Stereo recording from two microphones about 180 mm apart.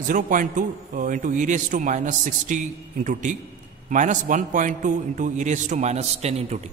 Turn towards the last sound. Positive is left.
turn(degrees=-35)  # may be behind; listen again after turning